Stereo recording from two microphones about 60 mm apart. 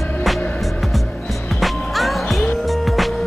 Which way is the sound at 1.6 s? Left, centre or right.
Centre.